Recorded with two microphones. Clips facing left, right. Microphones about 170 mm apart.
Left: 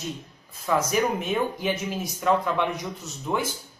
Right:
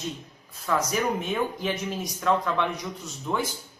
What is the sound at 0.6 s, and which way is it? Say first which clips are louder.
A man's voice: left 2 dB; 10° left (ahead or behind).